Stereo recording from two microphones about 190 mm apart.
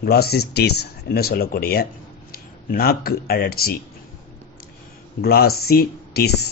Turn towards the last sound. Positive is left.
turn(degrees=55)  # may be behind; listen again after turning